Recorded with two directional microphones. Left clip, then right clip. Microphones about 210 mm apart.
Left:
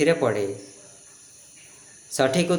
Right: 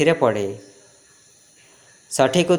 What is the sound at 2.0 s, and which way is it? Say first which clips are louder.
Speech: right 5 dB; 35° right (ahead or behind).